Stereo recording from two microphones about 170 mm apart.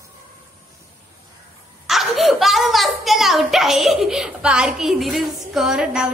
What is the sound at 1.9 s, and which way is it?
A woman's voice, centre (ahead or behind).